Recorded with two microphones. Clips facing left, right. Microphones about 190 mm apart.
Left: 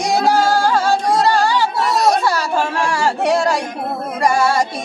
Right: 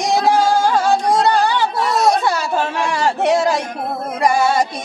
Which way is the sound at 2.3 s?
20° right (ahead or behind).